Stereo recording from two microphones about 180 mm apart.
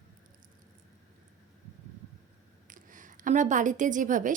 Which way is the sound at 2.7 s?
45° right (ahead or behind).